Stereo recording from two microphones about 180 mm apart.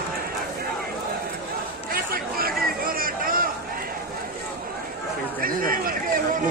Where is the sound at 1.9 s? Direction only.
55° right (ahead or behind).